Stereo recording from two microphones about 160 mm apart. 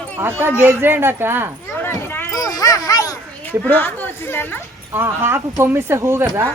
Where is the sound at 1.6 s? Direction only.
15° left (ahead or behind).